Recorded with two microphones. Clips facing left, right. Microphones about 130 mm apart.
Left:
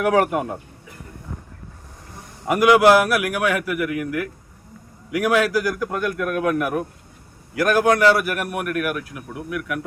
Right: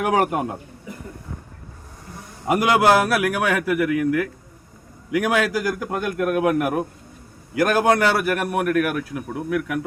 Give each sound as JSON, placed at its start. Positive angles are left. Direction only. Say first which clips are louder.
{"t": 0.2, "sound": "a man's voice", "louder": "left 1 dB", "side_deg": -25}
{"t": 2.5, "sound": "a man's voice", "louder": "left 3 dB", "side_deg": -25}